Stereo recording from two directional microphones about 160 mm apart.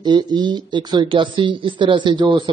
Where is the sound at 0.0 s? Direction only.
25° right (ahead or behind).